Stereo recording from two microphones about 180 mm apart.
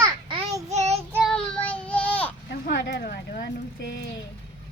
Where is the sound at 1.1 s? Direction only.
Centre (ahead or behind).